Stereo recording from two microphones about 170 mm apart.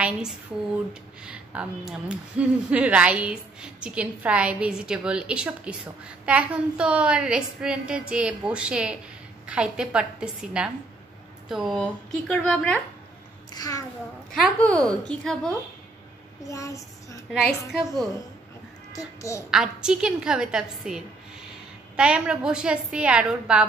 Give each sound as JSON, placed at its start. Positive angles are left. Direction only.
{"t": 0.0, "sound": "a woman's voice", "side_deg": -5}
{"t": 13.5, "sound": "a child's voice", "side_deg": 20}
{"t": 14.3, "sound": "a woman's voice", "side_deg": 5}
{"t": 16.4, "sound": "a child's voice", "side_deg": 20}
{"t": 18.9, "sound": "a child's voice", "side_deg": 20}
{"t": 19.5, "sound": "a woman's voice", "side_deg": -5}